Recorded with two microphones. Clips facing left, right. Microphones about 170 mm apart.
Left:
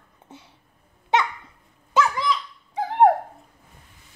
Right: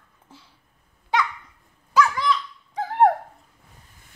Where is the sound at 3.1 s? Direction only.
10° left (ahead or behind).